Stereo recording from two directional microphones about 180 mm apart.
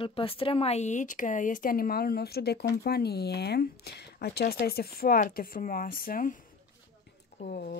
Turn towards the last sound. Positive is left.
turn(degrees=60)  # may be behind; listen again after turning